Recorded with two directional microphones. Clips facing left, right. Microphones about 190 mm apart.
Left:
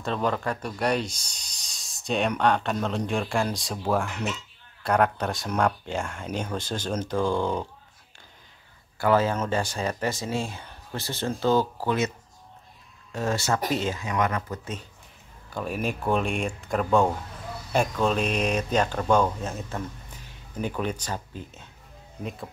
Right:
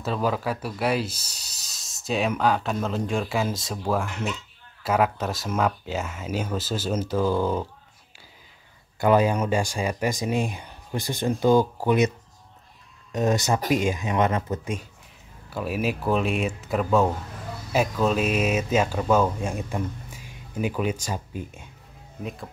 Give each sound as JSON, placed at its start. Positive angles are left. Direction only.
{"t": 0.0, "sound": "speech", "side_deg": -5}
{"t": 9.0, "sound": "speech", "side_deg": -15}
{"t": 13.1, "sound": "speech", "side_deg": -20}
{"t": 14.6, "sound": "speech", "side_deg": -10}